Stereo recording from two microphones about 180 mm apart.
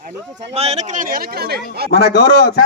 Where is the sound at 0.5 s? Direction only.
35° right (ahead or behind); by 1.5 s 60° right (ahead or behind).